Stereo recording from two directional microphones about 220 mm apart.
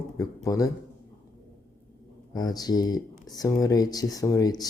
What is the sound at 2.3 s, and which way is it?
Speech, 15° left (ahead or behind).